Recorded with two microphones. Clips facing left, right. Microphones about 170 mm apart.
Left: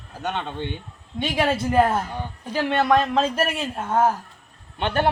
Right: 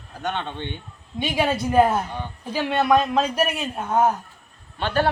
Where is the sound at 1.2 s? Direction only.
5° right (ahead or behind).